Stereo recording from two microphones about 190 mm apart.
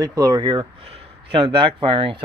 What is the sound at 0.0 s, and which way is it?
Speech, 20° right (ahead or behind).